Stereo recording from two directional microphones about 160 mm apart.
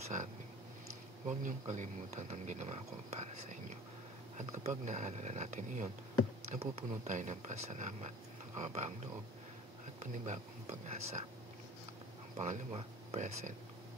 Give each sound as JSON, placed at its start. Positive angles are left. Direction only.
{"t": 1.2, "sound": "speech", "side_deg": -50}
{"t": 10.1, "sound": "speech", "side_deg": -50}
{"t": 12.4, "sound": "speech", "side_deg": -45}